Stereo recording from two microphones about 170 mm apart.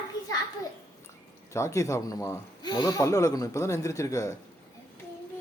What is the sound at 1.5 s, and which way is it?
Speech, 15° left (ahead or behind).